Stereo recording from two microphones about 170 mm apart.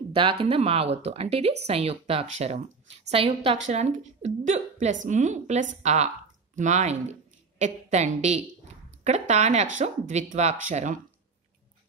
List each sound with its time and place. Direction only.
0.1 s a woman's voice: 30° right (ahead or behind)